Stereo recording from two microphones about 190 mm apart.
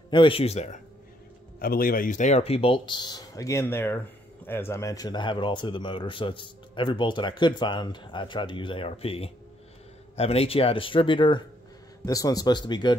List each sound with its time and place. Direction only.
0.1 s speech: 25° left (ahead or behind)
1.6 s speech: 50° left (ahead or behind); by 12.9 s 25° left (ahead or behind)